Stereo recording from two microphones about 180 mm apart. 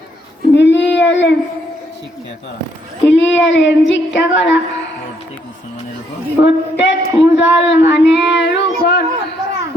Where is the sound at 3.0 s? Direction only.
90° left.